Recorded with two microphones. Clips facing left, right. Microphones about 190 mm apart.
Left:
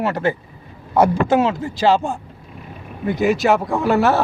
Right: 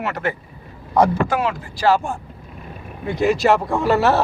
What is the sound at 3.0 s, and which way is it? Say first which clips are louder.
Speech: even; centre (ahead or behind).